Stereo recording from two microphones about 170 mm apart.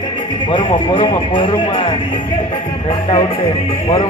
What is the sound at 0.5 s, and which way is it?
Speech, 30° left (ahead or behind).